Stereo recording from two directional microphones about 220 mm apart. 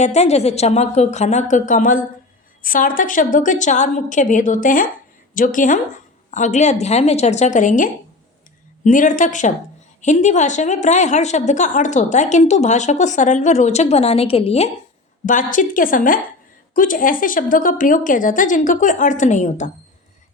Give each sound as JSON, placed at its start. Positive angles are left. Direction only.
{"t": 0.0, "sound": "a woman's voice", "side_deg": 30}